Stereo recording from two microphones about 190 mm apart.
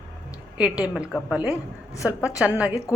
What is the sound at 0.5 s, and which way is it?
A woman's voice, 5° right (ahead or behind).